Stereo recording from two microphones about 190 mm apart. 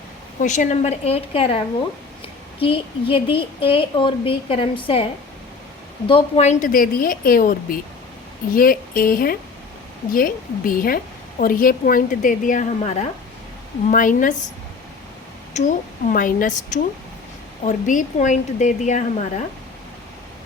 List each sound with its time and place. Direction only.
0.4 s a woman's voice: 40° left (ahead or behind)
6.1 s a woman's voice: 30° left (ahead or behind)
15.6 s a woman's voice: 40° left (ahead or behind)